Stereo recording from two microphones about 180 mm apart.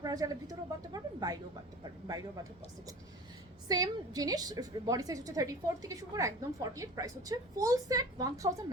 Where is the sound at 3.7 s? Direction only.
20° right (ahead or behind).